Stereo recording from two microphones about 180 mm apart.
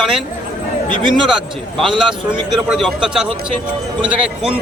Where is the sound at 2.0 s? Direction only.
25° right (ahead or behind).